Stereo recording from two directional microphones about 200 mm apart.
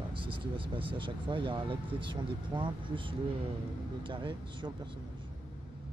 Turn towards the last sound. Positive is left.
turn(degrees=-25)  # may be behind; listen again after turning